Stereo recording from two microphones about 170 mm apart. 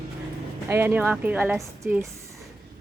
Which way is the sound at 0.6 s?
15° right (ahead or behind).